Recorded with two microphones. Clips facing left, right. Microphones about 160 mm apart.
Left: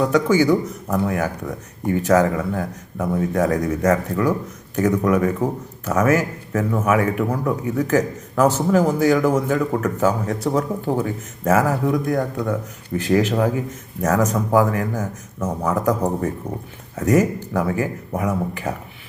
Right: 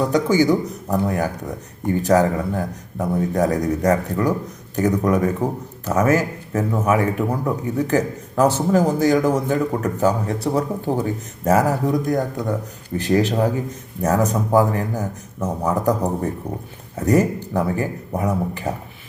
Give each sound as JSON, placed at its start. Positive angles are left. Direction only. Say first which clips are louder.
{"t": 0.1, "sound": "speech", "louder": "even", "side_deg": -35}